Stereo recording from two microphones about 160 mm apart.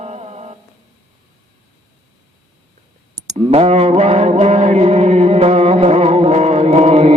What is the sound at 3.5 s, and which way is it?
Mantra, 40° right (ahead or behind).